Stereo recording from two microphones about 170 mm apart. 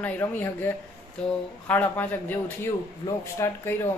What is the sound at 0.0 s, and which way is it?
Speech, 15° left (ahead or behind).